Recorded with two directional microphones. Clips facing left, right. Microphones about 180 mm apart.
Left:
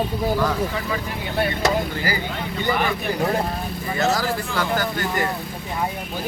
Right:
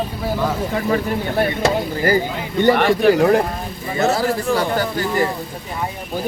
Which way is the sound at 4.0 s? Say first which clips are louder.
Right 4 dB; 30° right (ahead or behind).